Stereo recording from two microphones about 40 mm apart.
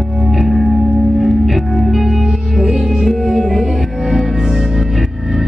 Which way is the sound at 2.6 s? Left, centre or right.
Centre.